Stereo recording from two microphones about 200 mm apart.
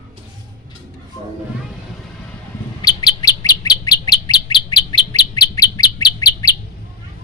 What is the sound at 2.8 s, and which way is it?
Bird, 20° left (ahead or behind).